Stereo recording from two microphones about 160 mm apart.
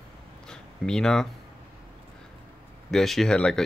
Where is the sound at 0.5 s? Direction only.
5° left (ahead or behind).